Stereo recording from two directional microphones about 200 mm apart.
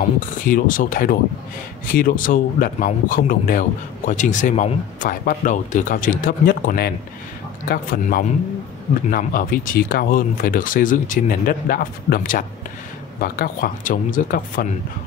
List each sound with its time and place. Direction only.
0.5 s speech: 40° left (ahead or behind)